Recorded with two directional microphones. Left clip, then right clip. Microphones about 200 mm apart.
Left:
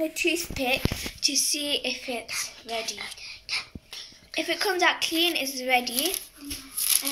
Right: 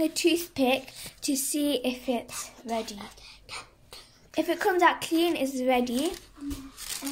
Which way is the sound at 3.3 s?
30° right (ahead or behind).